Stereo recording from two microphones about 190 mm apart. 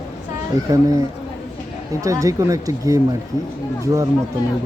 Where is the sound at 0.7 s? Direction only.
20° right (ahead or behind).